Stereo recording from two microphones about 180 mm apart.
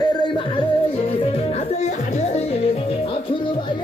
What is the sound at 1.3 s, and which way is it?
Music, 40° left (ahead or behind).